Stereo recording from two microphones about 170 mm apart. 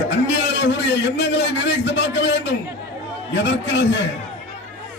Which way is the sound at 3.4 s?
90° left.